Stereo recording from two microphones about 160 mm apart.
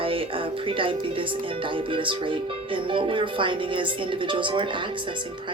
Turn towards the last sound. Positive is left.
turn(degrees=-30)  # may be behind; listen again after turning